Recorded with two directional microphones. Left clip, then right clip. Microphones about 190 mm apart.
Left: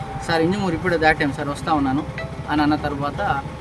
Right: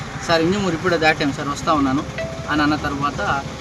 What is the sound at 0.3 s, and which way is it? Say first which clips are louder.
Speech: right 2 dB; 15° left (ahead or behind).